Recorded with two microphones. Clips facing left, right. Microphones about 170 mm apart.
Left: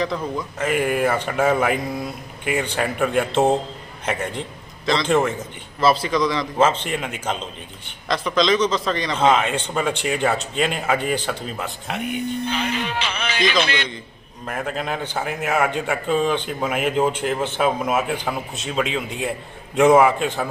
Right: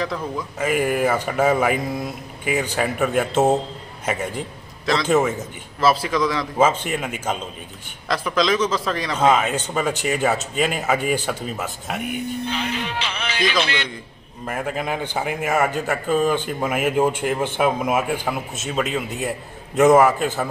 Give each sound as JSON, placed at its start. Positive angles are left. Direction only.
{"t": 0.0, "sound": "a man's voice", "side_deg": 0}
{"t": 12.5, "sound": "music", "side_deg": 55}
{"t": 14.4, "sound": "a man's voice", "side_deg": -5}